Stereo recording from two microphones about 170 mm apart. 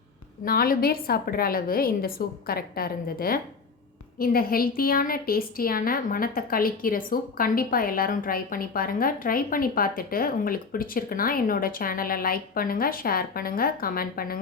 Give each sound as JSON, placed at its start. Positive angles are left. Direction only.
{"t": 0.4, "sound": "a woman's voice", "side_deg": 60}